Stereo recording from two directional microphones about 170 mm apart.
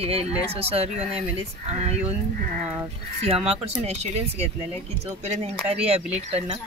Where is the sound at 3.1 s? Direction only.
35° right (ahead or behind).